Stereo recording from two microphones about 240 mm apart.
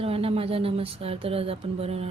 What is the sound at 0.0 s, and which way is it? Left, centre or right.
Speech, right.